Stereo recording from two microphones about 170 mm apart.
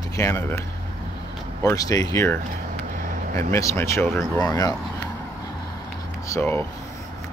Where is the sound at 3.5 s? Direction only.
15° left (ahead or behind).